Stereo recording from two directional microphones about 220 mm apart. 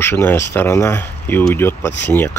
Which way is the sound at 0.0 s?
10° left (ahead or behind).